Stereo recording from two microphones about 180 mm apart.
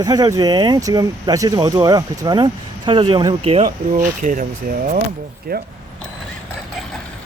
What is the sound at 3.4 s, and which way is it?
Speech, 35° right (ahead or behind).